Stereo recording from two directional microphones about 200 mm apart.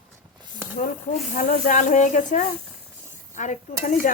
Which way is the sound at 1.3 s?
40° left (ahead or behind).